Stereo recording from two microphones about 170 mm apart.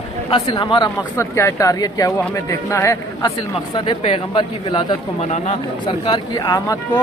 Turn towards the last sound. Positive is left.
turn(degrees=20)  # may be behind; listen again after turning